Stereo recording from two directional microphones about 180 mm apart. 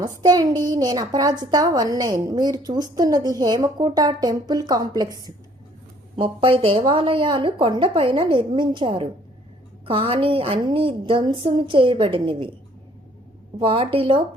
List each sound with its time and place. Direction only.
0.0 s a woman's voice: 20° right (ahead or behind)
13.6 s a woman's voice: 30° right (ahead or behind)